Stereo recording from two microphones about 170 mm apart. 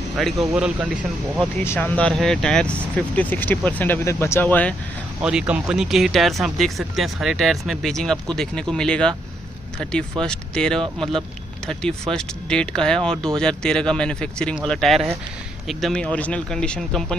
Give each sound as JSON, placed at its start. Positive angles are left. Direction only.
{"t": 0.2, "sound": "speech", "side_deg": -5}
{"t": 1.6, "sound": "speech", "side_deg": 10}
{"t": 5.2, "sound": "speech", "side_deg": -5}